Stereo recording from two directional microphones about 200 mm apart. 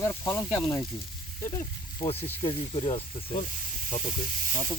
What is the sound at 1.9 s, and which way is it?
Speech, 25° left (ahead or behind).